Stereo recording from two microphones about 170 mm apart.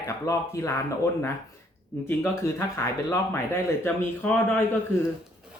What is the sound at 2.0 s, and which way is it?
Speech, 15° left (ahead or behind).